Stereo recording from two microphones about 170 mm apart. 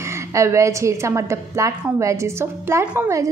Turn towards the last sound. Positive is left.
turn(degrees=-15)  # may be behind; listen again after turning